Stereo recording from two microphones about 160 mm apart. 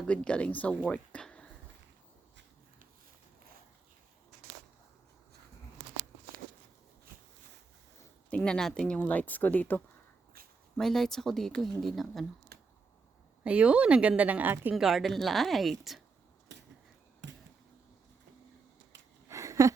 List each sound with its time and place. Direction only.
0.1 s speech: 5° left (ahead or behind)
0.9 s a sound: 5° left (ahead or behind)
8.3 s speech: 5° left (ahead or behind)
12.5 s computer keyboard: 90° right
13.4 s speech: 5° right (ahead or behind)
19.3 s a sound: 20° right (ahead or behind)